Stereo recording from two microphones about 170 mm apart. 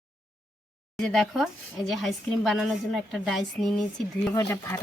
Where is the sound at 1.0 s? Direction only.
Centre (ahead or behind).